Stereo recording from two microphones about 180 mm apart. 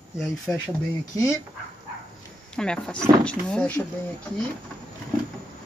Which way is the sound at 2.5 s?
5° left (ahead or behind).